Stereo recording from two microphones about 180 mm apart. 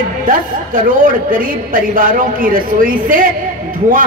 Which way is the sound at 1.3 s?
50° right (ahead or behind).